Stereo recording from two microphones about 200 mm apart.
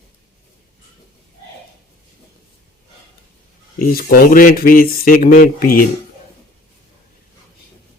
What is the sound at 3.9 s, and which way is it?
Speech, 45° left (ahead or behind).